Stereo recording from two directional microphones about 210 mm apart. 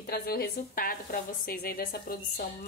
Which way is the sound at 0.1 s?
45° left (ahead or behind).